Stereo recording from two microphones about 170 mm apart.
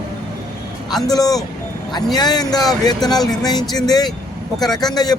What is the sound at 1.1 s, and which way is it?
Speech, 20° left (ahead or behind).